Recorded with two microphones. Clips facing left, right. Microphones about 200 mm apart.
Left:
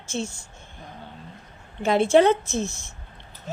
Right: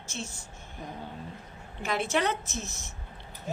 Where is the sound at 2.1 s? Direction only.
30° left (ahead or behind).